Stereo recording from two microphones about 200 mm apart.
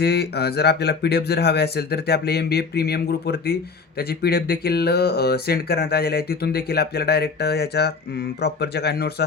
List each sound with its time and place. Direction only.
0.0 s speech: 55° left (ahead or behind)